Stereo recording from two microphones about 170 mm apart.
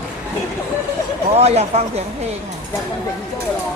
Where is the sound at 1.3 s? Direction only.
40° right (ahead or behind).